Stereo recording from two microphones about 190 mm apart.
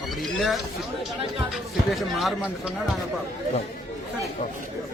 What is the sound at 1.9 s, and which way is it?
Speech, centre (ahead or behind).